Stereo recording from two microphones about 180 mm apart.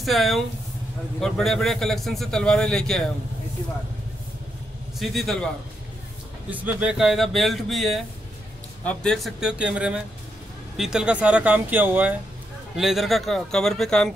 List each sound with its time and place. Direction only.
0.0 s a man's voice: centre (ahead or behind)
4.9 s a man's voice: centre (ahead or behind)
6.5 s a man's voice: 5° right (ahead or behind)